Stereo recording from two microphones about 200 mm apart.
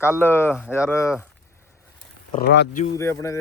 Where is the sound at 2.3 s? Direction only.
60° left (ahead or behind).